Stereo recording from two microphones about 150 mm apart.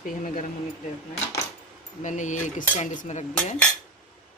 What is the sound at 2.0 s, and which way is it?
Speech, 55° left (ahead or behind).